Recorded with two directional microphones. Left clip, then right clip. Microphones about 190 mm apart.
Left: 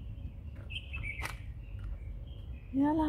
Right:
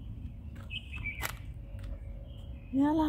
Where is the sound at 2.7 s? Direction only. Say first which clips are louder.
Right 2 dB; 15° right (ahead or behind).